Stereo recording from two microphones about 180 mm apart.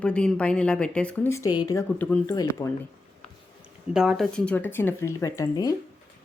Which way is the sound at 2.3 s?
20° left (ahead or behind).